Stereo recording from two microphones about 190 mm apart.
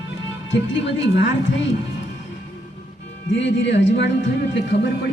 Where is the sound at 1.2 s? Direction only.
70° left (ahead or behind).